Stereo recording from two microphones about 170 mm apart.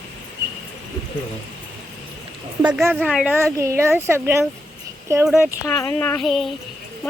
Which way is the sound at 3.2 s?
15° right (ahead or behind).